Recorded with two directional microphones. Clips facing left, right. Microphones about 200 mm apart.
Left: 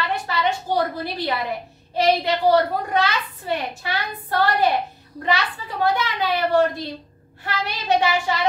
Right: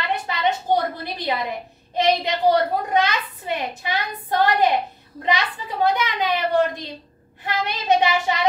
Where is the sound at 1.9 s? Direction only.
20° right (ahead or behind).